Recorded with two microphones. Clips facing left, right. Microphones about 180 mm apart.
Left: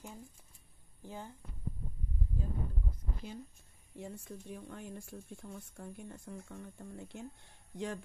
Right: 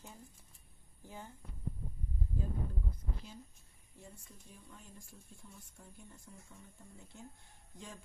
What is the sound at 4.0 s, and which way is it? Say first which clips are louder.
Speech: left 11 dB; 70° left (ahead or behind).